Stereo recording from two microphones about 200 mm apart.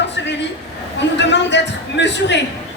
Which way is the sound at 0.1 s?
60° left (ahead or behind).